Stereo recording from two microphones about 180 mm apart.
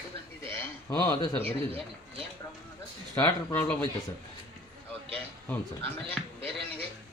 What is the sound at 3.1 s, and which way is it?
Speech, 10° left (ahead or behind).